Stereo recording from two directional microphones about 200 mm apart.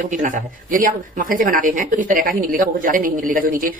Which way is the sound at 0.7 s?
40° right (ahead or behind).